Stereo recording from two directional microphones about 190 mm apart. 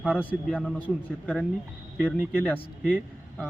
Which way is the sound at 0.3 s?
5° left (ahead or behind).